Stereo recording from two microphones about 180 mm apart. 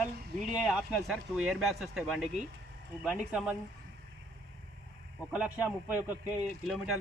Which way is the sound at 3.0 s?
5° right (ahead or behind).